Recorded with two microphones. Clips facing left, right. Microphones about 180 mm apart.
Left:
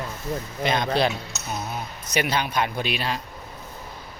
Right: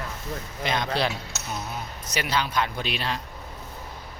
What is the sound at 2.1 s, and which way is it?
A man's voice, 15° left (ahead or behind).